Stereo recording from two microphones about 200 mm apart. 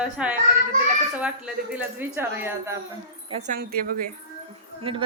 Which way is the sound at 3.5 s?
50° right (ahead or behind).